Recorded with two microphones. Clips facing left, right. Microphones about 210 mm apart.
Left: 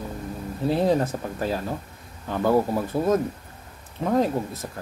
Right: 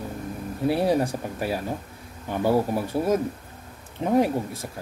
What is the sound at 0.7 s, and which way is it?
Speech, 10° right (ahead or behind).